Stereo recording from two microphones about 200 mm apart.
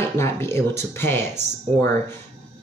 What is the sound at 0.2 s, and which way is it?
Speech, 15° left (ahead or behind).